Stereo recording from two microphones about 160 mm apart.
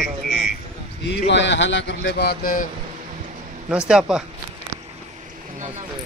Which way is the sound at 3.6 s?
5° right (ahead or behind).